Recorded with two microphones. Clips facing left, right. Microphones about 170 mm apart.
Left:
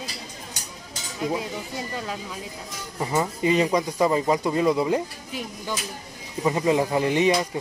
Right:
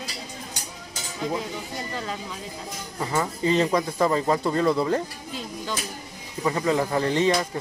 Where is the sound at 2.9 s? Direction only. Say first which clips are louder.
Left 2 dB; 15° left (ahead or behind).